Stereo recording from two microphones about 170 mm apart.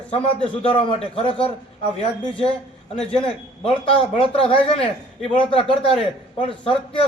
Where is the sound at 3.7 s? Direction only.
30° left (ahead or behind).